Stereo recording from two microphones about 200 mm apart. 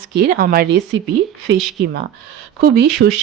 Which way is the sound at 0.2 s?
50° right (ahead or behind).